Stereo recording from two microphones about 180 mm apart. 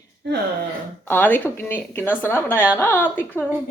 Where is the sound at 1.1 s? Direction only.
10° left (ahead or behind).